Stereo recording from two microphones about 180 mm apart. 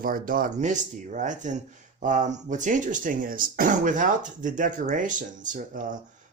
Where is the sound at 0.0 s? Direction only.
50° right (ahead or behind).